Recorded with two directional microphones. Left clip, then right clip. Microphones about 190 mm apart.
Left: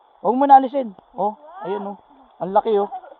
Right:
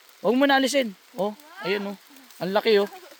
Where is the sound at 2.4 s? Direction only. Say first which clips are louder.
Left 3 dB; 15° right (ahead or behind).